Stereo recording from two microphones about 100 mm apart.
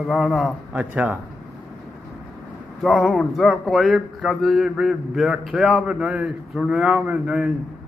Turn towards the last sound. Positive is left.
turn(degrees=-15)  # may be behind; listen again after turning